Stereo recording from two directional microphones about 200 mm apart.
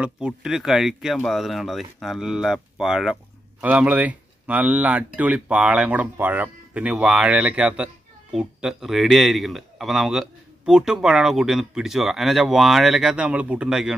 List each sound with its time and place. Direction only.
0.0 s speech: 5° right (ahead or behind)